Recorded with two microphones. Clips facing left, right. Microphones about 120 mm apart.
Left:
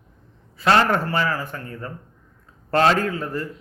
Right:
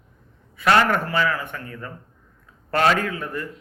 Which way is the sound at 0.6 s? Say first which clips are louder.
Even; 30° left (ahead or behind).